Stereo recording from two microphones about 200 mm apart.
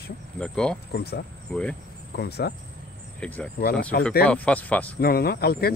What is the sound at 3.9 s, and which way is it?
Speech, 55° left (ahead or behind).